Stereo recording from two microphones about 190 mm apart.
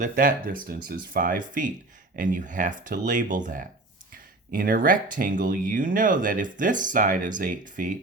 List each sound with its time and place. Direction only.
0.0 s speech: 50° right (ahead or behind)